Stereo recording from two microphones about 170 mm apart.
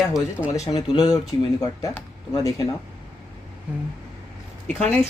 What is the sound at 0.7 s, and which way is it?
Speech, 25° left (ahead or behind).